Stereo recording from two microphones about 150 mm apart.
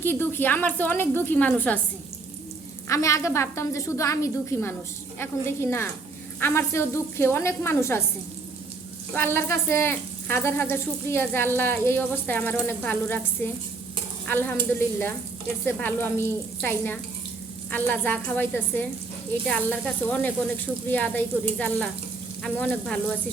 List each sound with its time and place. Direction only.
0.0 s speech: 15° left (ahead or behind)
2.9 s a woman's voice: 20° left (ahead or behind)
9.1 s speech: 15° left (ahead or behind)
22.4 s frying: 5° left (ahead or behind)